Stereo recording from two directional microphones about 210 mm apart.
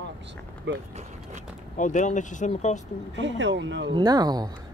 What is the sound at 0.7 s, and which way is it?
Speech, 60° right (ahead or behind).